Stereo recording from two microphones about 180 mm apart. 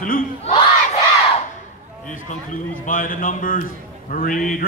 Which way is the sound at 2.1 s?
50° left (ahead or behind).